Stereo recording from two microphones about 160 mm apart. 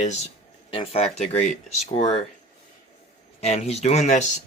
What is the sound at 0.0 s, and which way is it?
Speech, 45° left (ahead or behind).